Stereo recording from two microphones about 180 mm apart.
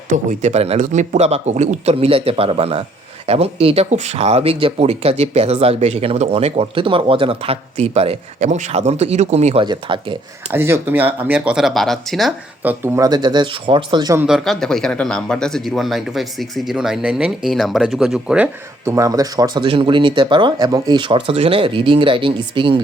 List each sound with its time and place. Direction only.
0.3 s speech: 35° right (ahead or behind)
9.6 s speech: 25° right (ahead or behind)
10.5 s speech: 10° right (ahead or behind)
12.6 s speech: 15° right (ahead or behind)
14.3 s speech: centre (ahead or behind)
18.9 s speech: 15° right (ahead or behind)